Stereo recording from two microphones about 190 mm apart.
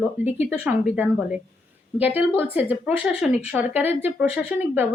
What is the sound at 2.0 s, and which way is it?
Speech, 10° right (ahead or behind).